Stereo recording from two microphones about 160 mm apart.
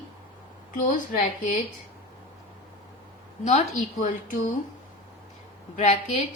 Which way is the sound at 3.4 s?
45° left (ahead or behind).